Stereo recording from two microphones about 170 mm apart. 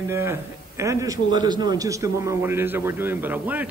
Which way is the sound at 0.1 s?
15° right (ahead or behind).